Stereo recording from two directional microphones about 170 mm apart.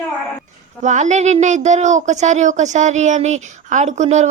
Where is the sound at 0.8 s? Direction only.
45° right (ahead or behind).